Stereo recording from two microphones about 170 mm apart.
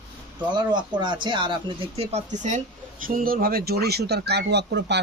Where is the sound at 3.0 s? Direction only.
55° right (ahead or behind); by 4.9 s 85° right.